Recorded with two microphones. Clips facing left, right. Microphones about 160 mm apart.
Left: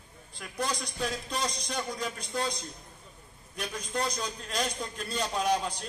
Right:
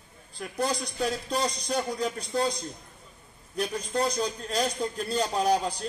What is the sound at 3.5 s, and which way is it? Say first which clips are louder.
A man's voice: right 5 dB; 30° right (ahead or behind).